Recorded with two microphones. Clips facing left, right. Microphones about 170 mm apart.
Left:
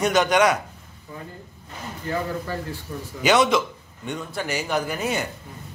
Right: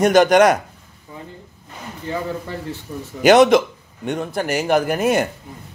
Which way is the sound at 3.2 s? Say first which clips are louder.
Right 8 dB; 55° right (ahead or behind).